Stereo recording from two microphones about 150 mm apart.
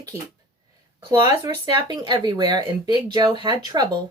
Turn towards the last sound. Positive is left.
turn(degrees=-30)  # may be behind; listen again after turning